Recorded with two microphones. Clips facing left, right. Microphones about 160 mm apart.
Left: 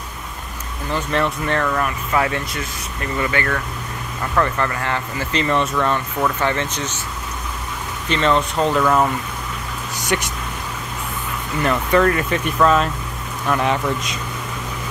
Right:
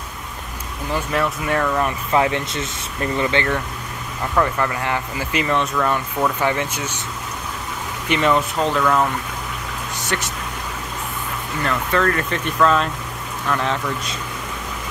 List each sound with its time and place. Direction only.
0.9 s speech: 5° right (ahead or behind)
2.1 s speech: 20° right (ahead or behind)
5.5 s speech: centre (ahead or behind)
8.1 s speech: 10° right (ahead or behind); by 9.0 s 10° left (ahead or behind)
10.0 s speech: 15° left (ahead or behind)
11.6 s speech: 15° left (ahead or behind)